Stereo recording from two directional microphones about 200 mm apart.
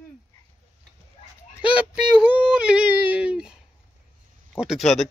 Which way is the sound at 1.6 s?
5° right (ahead or behind).